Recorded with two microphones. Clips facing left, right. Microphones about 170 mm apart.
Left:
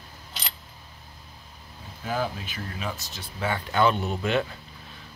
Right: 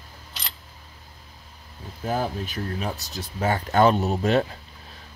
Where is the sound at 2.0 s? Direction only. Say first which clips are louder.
Right 3 dB; 40° right (ahead or behind).